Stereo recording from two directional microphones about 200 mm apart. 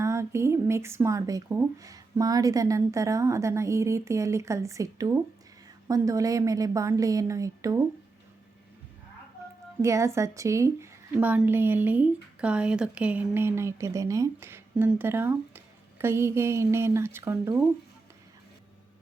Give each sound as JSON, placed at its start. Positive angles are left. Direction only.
{"t": 0.0, "sound": "speech", "side_deg": -15}
{"t": 9.8, "sound": "speech", "side_deg": -15}